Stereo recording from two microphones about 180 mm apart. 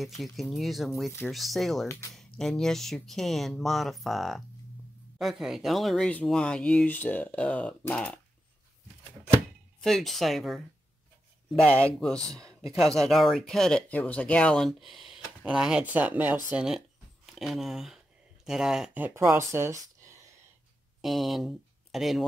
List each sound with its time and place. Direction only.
0.0 s speech: centre (ahead or behind)
1.9 s speech: 15° left (ahead or behind)
2.1 s speech: centre (ahead or behind)
9.8 s speech: centre (ahead or behind)
11.6 s speech: 5° left (ahead or behind); by 20.3 s 15° right (ahead or behind)
21.0 s speech: centre (ahead or behind)